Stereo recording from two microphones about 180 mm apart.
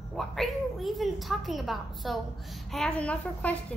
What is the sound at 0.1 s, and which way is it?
A woman's voice, centre (ahead or behind).